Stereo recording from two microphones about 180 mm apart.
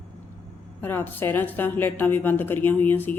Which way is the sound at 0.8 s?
10° left (ahead or behind).